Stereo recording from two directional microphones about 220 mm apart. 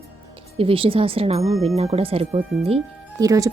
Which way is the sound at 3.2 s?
15° right (ahead or behind).